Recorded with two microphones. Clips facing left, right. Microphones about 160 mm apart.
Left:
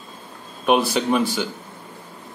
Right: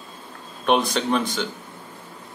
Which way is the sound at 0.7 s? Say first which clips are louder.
Left 2 dB; 5° left (ahead or behind).